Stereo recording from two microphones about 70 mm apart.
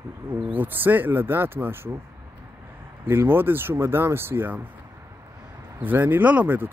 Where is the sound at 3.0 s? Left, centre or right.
Right.